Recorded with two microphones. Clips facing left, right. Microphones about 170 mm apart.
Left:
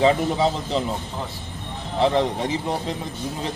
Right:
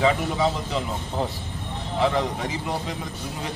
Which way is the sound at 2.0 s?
30° left (ahead or behind).